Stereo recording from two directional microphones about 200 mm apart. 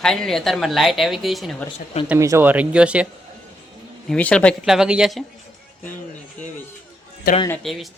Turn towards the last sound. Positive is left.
turn(degrees=0)  # may be behind; listen again after turning